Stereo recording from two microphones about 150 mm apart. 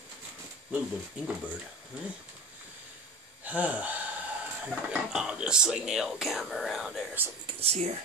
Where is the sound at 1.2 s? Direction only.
10° right (ahead or behind).